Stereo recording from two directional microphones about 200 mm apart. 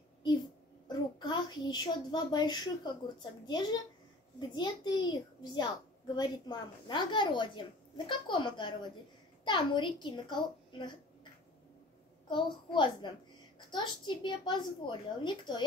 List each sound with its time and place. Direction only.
0.8 s a child's voice: 20° left (ahead or behind)
12.3 s a woman's voice: 25° left (ahead or behind)